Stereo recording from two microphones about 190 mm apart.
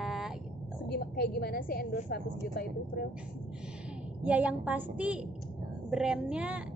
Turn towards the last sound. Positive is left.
turn(degrees=-5)  # may be behind; listen again after turning